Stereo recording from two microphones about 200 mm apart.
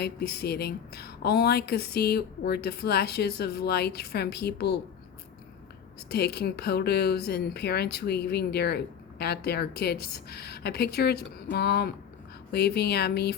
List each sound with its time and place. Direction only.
0.0 s speech: 50° left (ahead or behind)
6.1 s speech: 55° left (ahead or behind)